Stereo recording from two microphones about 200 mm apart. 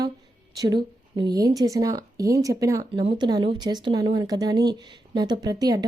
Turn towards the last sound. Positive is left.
turn(degrees=-20)  # may be behind; listen again after turning